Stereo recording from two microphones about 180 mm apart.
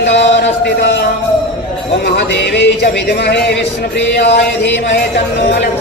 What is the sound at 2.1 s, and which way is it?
Speech, 70° left (ahead or behind).